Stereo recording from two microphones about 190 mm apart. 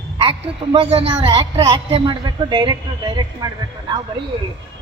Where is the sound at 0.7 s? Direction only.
30° right (ahead or behind).